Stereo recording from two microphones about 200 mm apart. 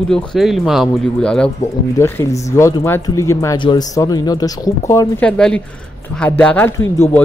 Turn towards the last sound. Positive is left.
turn(degrees=10)  # may be behind; listen again after turning